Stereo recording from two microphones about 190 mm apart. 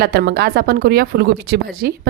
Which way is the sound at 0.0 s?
55° right (ahead or behind).